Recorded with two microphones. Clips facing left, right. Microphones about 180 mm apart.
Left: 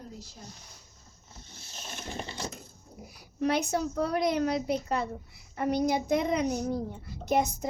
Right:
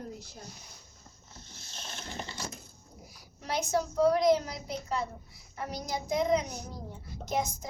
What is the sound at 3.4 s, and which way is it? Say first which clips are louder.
A woman's voice: left 3 dB; 60° left (ahead or behind).